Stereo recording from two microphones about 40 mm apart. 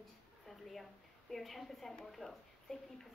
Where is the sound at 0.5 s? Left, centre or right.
Centre.